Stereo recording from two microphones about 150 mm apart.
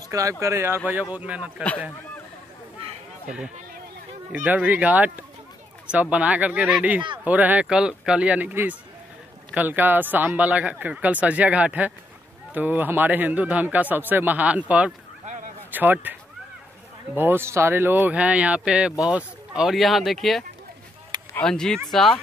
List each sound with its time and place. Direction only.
0.1 s speech: 20° right (ahead or behind)
3.3 s speech: 5° right (ahead or behind)
17.2 s speech: 15° right (ahead or behind); by 22.2 s centre (ahead or behind)